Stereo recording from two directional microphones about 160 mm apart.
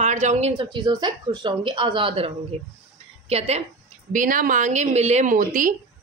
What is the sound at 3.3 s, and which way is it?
Speech, 40° right (ahead or behind).